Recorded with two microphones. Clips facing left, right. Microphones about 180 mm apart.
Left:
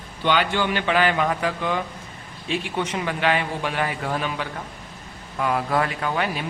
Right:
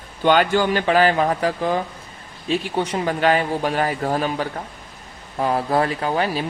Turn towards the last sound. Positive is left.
turn(degrees=-35)  # may be behind; listen again after turning